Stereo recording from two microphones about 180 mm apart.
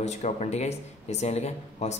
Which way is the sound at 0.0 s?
40° left (ahead or behind).